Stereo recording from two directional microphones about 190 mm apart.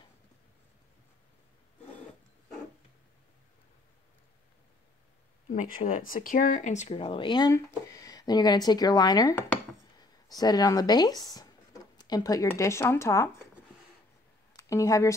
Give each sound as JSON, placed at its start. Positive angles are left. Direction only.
{"t": 5.5, "sound": "speech", "side_deg": 45}
{"t": 14.5, "sound": "a woman's voice", "side_deg": 15}